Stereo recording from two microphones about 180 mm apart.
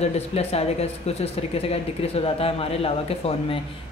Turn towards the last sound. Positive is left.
turn(degrees=35)  # may be behind; listen again after turning